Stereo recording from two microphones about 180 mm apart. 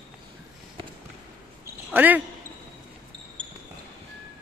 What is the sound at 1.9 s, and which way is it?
Speech, 10° right (ahead or behind).